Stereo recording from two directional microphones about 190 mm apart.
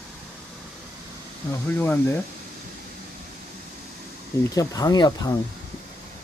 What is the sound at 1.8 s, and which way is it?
Speech, 10° left (ahead or behind).